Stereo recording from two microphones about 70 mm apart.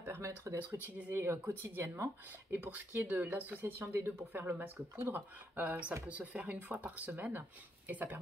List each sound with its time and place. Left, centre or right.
0.0 s speech: right
2.5 s speech: right